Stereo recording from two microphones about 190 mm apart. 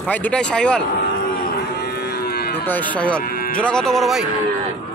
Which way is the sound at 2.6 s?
10° left (ahead or behind).